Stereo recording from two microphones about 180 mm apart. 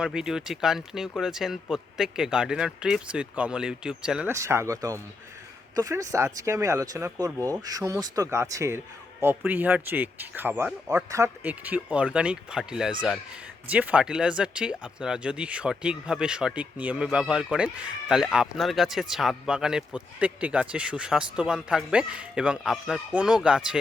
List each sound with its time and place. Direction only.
0.0 s speech: 5° right (ahead or behind)
4.3 s speech: 15° right (ahead or behind)